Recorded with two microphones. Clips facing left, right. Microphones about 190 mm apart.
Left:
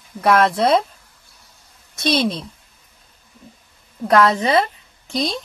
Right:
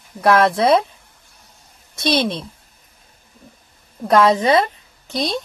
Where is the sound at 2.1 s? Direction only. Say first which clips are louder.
Even; centre (ahead or behind).